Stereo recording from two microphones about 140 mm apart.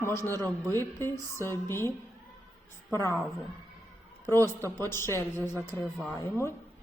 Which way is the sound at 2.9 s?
20° left (ahead or behind).